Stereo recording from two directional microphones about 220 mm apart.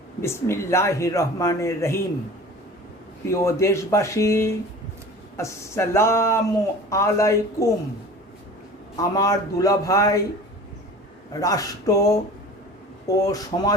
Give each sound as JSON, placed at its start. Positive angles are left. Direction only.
{"t": 0.2, "sound": "speech", "side_deg": 10}
{"t": 3.2, "sound": "speech", "side_deg": 15}
{"t": 9.0, "sound": "speech", "side_deg": 15}
{"t": 11.3, "sound": "speech", "side_deg": 15}